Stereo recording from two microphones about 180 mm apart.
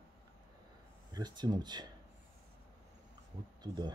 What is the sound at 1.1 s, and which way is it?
Speech, 25° right (ahead or behind).